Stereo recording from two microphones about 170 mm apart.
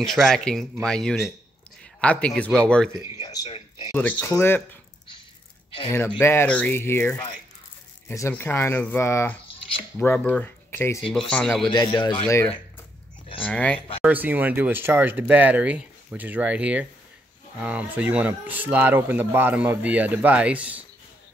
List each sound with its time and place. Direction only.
0.0 s speech: centre (ahead or behind)
3.2 s a sound: 20° left (ahead or behind)
3.9 s speech: 10° left (ahead or behind)
5.9 s speech: 15° left (ahead or behind)
11.7 s a man's voice: 25° left (ahead or behind)
13.5 s speech: 10° left (ahead or behind)
14.0 s speech: 10° right (ahead or behind)